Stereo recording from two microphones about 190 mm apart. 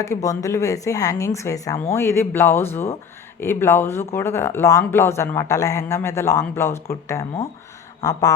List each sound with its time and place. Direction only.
0.0 s speech: 15° left (ahead or behind)